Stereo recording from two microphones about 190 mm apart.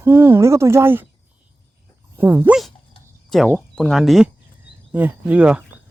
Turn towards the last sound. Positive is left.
turn(degrees=-5)  # may be behind; listen again after turning